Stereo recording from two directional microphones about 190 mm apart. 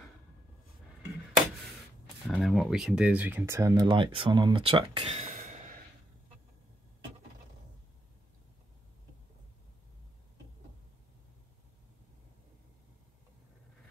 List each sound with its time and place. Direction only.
2.2 s speech: centre (ahead or behind); by 5.6 s 40° right (ahead or behind)